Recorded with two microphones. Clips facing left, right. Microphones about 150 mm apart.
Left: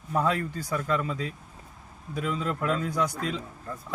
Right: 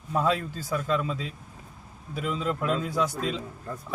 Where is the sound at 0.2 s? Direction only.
10° right (ahead or behind).